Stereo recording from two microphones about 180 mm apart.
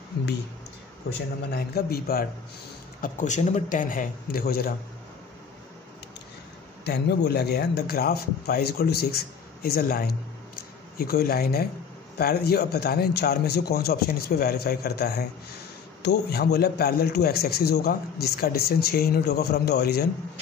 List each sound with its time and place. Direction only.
1.5 s a man's voice: 60° left (ahead or behind)
3.0 s speech: 45° left (ahead or behind)
6.8 s a man's voice: 65° left (ahead or behind)